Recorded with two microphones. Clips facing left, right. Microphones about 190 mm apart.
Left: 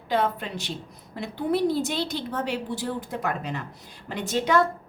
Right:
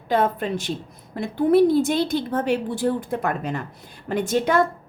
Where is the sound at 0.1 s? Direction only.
50° right (ahead or behind).